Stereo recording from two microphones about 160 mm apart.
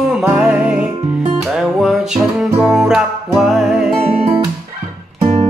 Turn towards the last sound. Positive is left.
turn(degrees=-40)  # may be behind; listen again after turning